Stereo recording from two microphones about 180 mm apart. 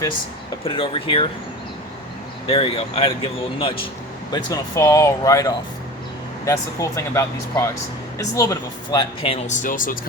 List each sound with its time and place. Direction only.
0.6 s speech: 30° left (ahead or behind)
2.5 s speech: 30° left (ahead or behind); by 10.0 s 50° left (ahead or behind)